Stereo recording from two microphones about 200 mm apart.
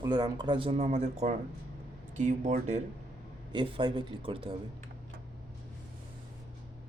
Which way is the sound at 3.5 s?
25° right (ahead or behind).